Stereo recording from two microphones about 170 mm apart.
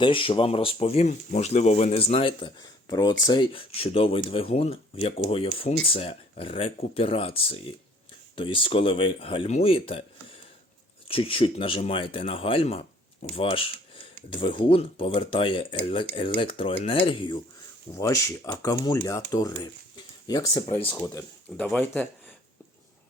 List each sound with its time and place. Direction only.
0.0 s speech: 30° left (ahead or behind)
11.1 s speech: 35° left (ahead or behind)
17.9 s speech: 20° left (ahead or behind)
20.9 s speech: 15° left (ahead or behind)